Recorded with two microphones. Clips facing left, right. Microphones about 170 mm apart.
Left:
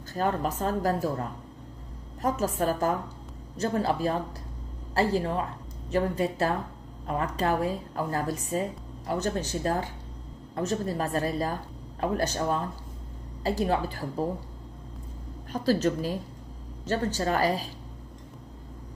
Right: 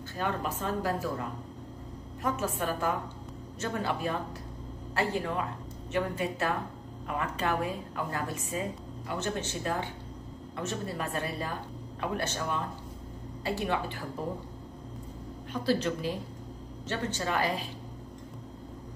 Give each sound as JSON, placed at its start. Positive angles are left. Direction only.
{"t": 0.1, "sound": "speech", "side_deg": 40}
{"t": 2.2, "sound": "a woman's voice", "side_deg": 40}
{"t": 15.5, "sound": "speech", "side_deg": 40}